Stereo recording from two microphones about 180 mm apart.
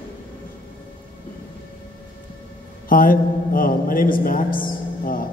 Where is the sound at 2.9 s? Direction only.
50° left (ahead or behind).